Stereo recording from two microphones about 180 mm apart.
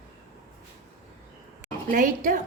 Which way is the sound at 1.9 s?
50° right (ahead or behind).